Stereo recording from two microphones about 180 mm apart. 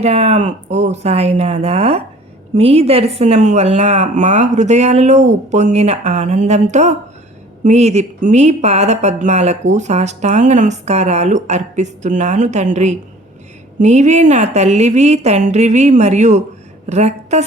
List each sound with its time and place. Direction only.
0.0 s a woman's voice: 35° right (ahead or behind)